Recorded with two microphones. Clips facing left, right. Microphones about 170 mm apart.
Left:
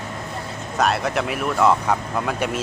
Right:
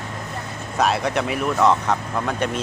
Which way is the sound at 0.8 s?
Centre (ahead or behind).